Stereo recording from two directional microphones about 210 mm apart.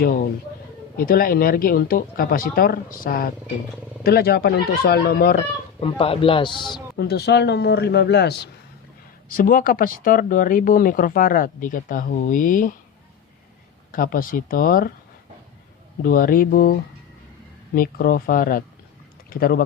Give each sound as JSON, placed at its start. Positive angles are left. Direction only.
{"t": 0.9, "sound": "speech", "side_deg": 45}
{"t": 5.8, "sound": "a man's voice", "side_deg": 25}
{"t": 6.9, "sound": "speech", "side_deg": 50}
{"t": 9.3, "sound": "speech", "side_deg": 40}
{"t": 13.9, "sound": "speech", "side_deg": 40}
{"t": 16.0, "sound": "speech", "side_deg": 40}
{"t": 17.7, "sound": "speech", "side_deg": 45}